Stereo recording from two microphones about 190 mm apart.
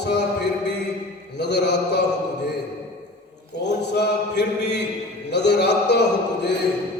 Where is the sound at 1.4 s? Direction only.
65° left (ahead or behind).